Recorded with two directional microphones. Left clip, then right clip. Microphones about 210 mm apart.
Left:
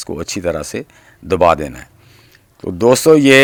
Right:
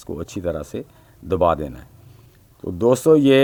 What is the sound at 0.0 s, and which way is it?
Speech, 20° left (ahead or behind).